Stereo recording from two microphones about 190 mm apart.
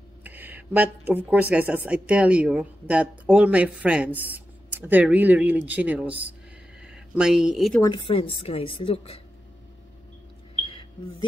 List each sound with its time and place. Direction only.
0.2 s speech: 10° right (ahead or behind)
7.8 s a woman's voice: 25° left (ahead or behind)
10.6 s a sound: 25° left (ahead or behind)